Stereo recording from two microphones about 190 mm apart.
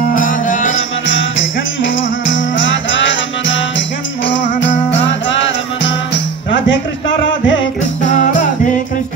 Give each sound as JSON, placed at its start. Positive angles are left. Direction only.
{"t": 0.1, "sound": "music", "side_deg": 45}
{"t": 2.0, "sound": "music", "side_deg": 85}
{"t": 6.5, "sound": "a sound", "side_deg": 80}
{"t": 8.0, "sound": "music", "side_deg": 40}